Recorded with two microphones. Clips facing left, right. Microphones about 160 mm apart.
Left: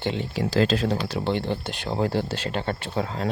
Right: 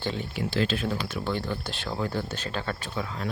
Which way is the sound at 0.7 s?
35° left (ahead or behind).